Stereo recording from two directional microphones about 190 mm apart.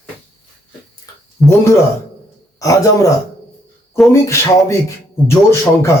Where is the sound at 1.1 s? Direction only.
20° left (ahead or behind).